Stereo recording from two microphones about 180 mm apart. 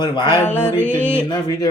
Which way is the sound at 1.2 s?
25° left (ahead or behind).